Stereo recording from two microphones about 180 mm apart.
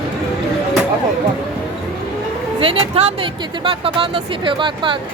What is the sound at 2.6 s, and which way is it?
Speech, 30° right (ahead or behind).